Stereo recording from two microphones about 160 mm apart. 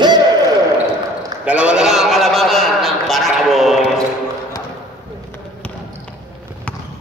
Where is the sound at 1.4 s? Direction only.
5° right (ahead or behind).